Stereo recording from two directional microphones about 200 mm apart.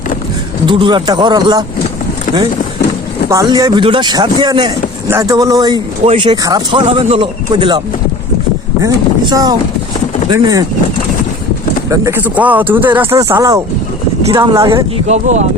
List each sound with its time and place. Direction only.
0.6 s a man's voice: 25° right (ahead or behind)
3.2 s a man's voice: 15° right (ahead or behind)
8.8 s a man's voice: 20° right (ahead or behind)
11.9 s speech: 15° right (ahead or behind)
15.0 s speech: 35° right (ahead or behind)